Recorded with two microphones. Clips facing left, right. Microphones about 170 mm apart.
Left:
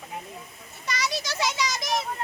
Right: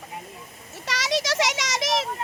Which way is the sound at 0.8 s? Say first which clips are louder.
Right 4 dB; 90° right.